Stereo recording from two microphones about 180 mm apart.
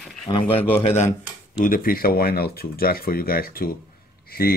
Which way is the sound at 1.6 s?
50° left (ahead or behind).